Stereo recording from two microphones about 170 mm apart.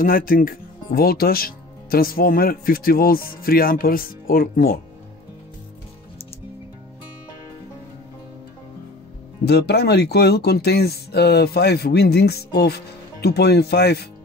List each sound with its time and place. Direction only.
0.0 s speech: 55° left (ahead or behind)
9.4 s speech: 75° left (ahead or behind)